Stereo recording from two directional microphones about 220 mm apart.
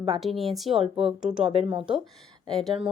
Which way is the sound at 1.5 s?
25° right (ahead or behind).